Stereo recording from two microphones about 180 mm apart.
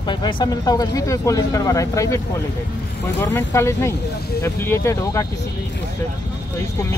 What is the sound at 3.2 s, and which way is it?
Speech, 15° left (ahead or behind).